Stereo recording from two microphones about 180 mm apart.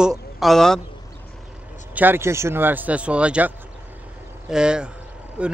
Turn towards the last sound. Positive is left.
turn(degrees=-5)  # may be behind; listen again after turning